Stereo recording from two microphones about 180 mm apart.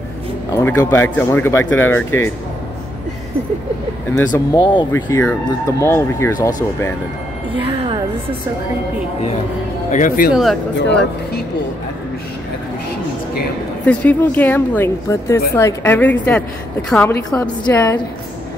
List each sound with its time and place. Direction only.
0.5 s speech: 15° left (ahead or behind)
4.3 s speech: 25° left (ahead or behind)
7.6 s a sound: 30° right (ahead or behind)
9.8 s speech: 45° left (ahead or behind)
10.3 s speech: centre (ahead or behind)
10.8 s speech: 70° left (ahead or behind)
13.8 s speech: 10° left (ahead or behind)